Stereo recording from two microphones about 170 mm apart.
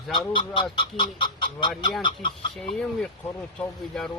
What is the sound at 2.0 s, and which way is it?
Speech, 30° left (ahead or behind).